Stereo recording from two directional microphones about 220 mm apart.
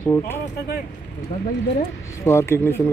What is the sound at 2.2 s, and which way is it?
Speech, 10° left (ahead or behind).